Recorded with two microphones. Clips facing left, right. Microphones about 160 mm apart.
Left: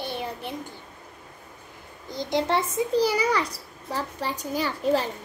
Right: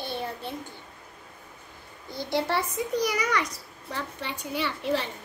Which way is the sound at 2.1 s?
20° left (ahead or behind).